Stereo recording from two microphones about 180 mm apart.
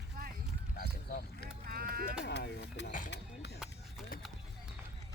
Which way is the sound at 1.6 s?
55° right (ahead or behind).